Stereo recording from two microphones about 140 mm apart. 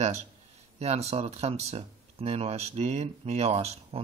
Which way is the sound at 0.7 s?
50° right (ahead or behind).